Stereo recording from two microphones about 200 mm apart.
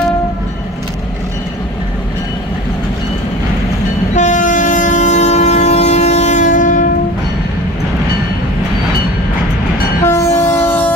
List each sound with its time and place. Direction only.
4.1 s train: 40° left (ahead or behind)
10.0 s train: 15° left (ahead or behind)